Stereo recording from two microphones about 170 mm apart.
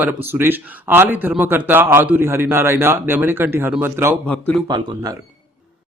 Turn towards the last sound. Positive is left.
turn(degrees=-25)  # may be behind; listen again after turning